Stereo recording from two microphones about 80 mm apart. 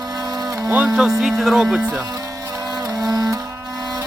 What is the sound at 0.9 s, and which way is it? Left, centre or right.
Speech, centre.